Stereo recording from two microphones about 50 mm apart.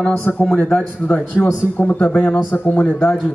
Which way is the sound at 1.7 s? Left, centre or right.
Left.